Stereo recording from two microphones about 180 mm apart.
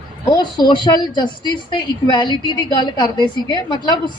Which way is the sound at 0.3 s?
25° left (ahead or behind).